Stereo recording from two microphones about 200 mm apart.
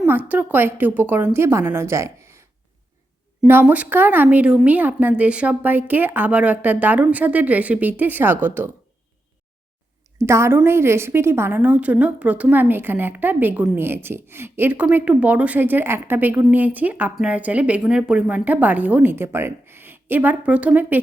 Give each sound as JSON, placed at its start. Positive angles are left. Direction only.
{"t": 0.0, "sound": "a woman's voice", "side_deg": -10}
{"t": 10.2, "sound": "a woman's voice", "side_deg": -15}